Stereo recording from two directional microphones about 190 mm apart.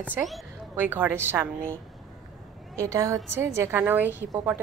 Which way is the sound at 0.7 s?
10° right (ahead or behind).